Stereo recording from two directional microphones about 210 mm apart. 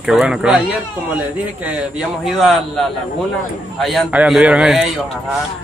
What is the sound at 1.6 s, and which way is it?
Speech, 5° right (ahead or behind).